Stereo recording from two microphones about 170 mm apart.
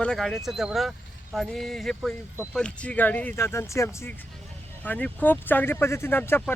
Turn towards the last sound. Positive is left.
turn(degrees=10)  # may be behind; listen again after turning